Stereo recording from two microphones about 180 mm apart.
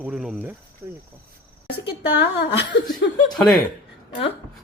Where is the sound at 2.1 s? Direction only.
70° left (ahead or behind).